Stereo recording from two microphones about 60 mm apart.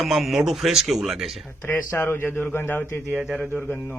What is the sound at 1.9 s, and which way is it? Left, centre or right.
Speech, left.